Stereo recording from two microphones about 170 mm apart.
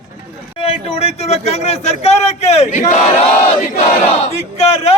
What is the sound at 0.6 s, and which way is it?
A man's voice, 35° left (ahead or behind).